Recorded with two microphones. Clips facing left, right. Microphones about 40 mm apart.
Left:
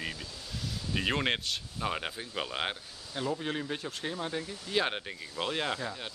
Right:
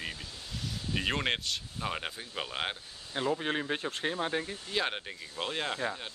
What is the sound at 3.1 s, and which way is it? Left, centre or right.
Speech, right.